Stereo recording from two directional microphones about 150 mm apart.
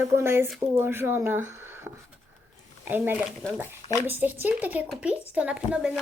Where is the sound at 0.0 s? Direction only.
15° right (ahead or behind).